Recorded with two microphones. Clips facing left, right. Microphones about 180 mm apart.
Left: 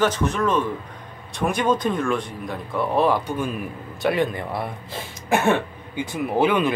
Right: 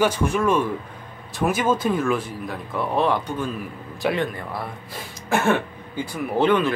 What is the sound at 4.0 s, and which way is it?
Speech, centre (ahead or behind).